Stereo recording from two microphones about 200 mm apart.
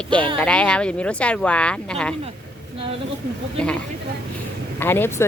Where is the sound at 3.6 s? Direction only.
5° left (ahead or behind).